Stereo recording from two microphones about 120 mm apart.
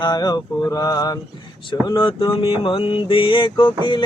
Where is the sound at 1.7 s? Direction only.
45° left (ahead or behind).